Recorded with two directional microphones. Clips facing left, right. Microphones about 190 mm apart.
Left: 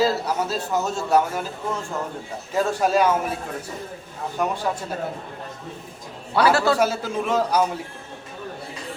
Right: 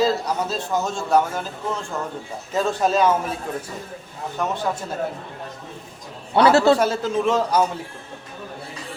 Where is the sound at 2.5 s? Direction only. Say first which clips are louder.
Even; 10° left (ahead or behind).